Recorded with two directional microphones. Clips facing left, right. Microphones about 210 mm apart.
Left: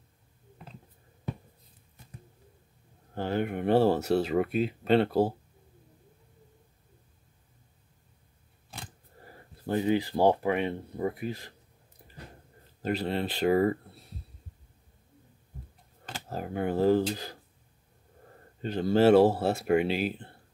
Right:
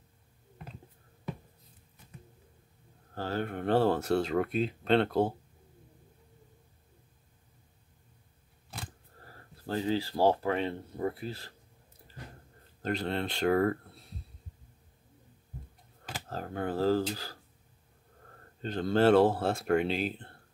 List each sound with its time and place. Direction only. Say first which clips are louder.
3.2 s speech: left 4 dB; 15° left (ahead or behind)
9.2 s speech: left 4 dB; 15° left (ahead or behind)
12.8 s speech: left 2 dB; 5° left (ahead or behind)
16.3 s speech: left 4 dB; 10° left (ahead or behind)
18.6 s speech: left 3 dB; 5° left (ahead or behind)